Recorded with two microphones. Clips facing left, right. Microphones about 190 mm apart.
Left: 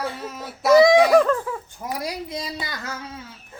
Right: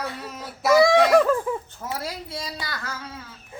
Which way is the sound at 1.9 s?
15° left (ahead or behind).